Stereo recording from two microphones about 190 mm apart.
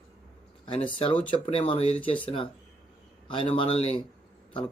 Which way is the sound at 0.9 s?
25° left (ahead or behind).